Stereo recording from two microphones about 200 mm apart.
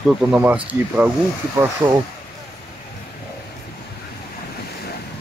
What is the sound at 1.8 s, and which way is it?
Speech, 25° right (ahead or behind).